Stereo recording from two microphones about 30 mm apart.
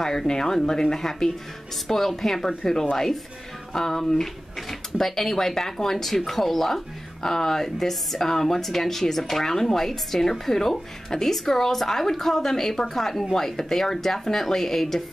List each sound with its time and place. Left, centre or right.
0.3 s speech: centre